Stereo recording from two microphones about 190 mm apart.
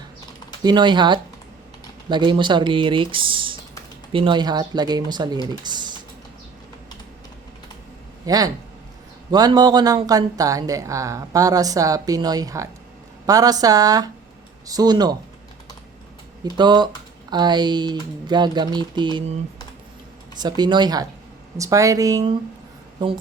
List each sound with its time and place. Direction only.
0.6 s speech: 25° right (ahead or behind)
5.5 s a sound: 25° right (ahead or behind)
8.3 s speech: 20° right (ahead or behind)
16.4 s speech: 25° right (ahead or behind)
20.4 s speech: 25° right (ahead or behind)